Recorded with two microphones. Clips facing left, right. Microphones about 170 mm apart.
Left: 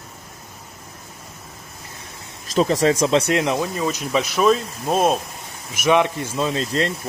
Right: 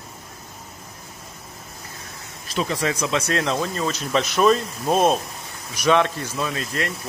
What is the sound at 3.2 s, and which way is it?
Speech, 15° left (ahead or behind).